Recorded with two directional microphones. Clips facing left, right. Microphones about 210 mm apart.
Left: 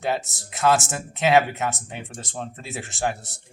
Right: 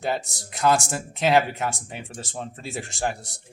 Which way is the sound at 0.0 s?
Centre (ahead or behind).